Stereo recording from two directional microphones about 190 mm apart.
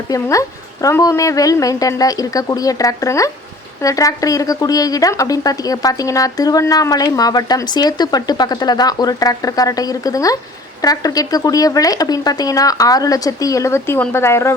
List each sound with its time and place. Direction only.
0.1 s a woman's voice: 15° left (ahead or behind)